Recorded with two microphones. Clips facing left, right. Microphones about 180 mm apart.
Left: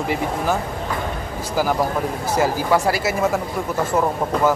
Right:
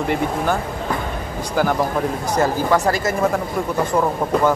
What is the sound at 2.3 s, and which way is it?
Speech, 10° left (ahead or behind).